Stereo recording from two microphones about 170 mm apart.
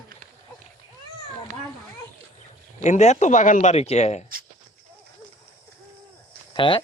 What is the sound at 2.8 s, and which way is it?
Speech, 40° left (ahead or behind).